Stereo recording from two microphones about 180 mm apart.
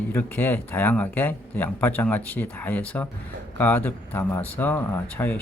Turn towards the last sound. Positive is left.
turn(degrees=10)  # may be behind; listen again after turning